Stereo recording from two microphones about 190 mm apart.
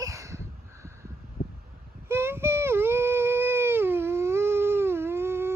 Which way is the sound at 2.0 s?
15° right (ahead or behind).